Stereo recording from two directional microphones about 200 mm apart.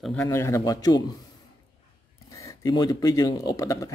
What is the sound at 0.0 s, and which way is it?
Speech, 5° left (ahead or behind).